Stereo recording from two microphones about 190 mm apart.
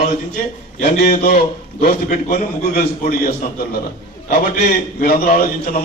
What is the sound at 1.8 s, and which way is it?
A man's voice, 45° left (ahead or behind).